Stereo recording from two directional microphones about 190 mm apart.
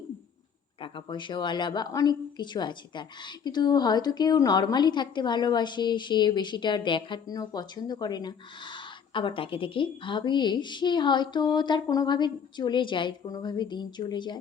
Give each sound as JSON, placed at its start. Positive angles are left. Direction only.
{"t": 0.8, "sound": "a woman's voice", "side_deg": 25}